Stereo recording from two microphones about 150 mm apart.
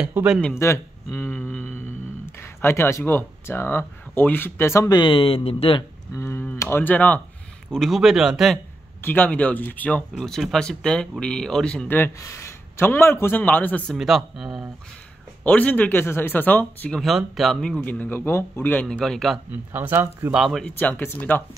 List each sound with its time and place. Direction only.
0.0 s speech: 5° right (ahead or behind)
0.6 s speech: 15° left (ahead or behind); by 5.9 s 40° left (ahead or behind)
6.1 s speech: 15° left (ahead or behind); by 8.5 s centre (ahead or behind)
9.0 s speech: 10° left (ahead or behind)
13.9 s speech: centre (ahead or behind)
15.4 s speech: 10° left (ahead or behind)
17.0 s speech: centre (ahead or behind)
19.5 s speech: 15° right (ahead or behind)
20.3 s speech: centre (ahead or behind)